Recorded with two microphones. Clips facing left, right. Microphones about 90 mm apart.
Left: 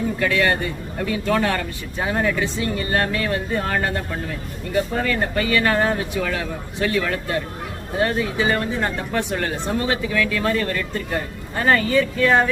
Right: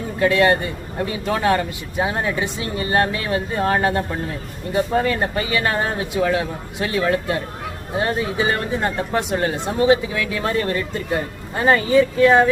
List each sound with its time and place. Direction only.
0.2 s a man's voice: 25° right (ahead or behind)
8.0 s speech: 20° right (ahead or behind)